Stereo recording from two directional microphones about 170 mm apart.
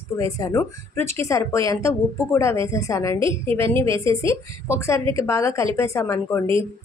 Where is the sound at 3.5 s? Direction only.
15° left (ahead or behind).